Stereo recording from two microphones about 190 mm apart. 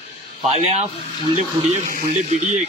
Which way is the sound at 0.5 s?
35° right (ahead or behind).